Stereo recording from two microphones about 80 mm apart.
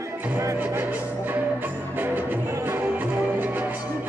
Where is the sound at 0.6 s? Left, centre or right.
Right.